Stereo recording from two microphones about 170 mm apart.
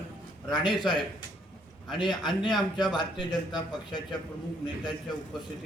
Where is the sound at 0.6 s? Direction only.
30° left (ahead or behind).